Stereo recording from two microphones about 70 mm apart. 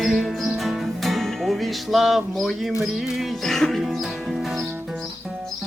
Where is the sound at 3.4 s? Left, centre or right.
Centre.